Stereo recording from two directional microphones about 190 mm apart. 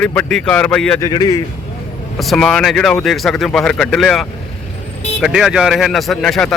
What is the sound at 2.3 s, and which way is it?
A man's voice, centre (ahead or behind).